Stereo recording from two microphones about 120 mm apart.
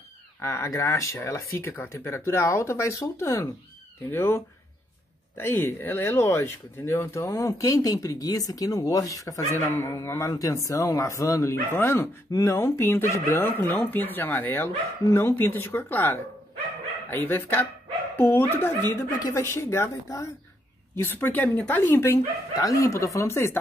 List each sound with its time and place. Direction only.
0.4 s speech: 25° left (ahead or behind)
5.4 s speech: 20° left (ahead or behind)